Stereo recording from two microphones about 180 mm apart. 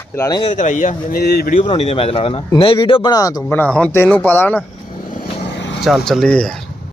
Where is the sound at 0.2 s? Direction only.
20° left (ahead or behind).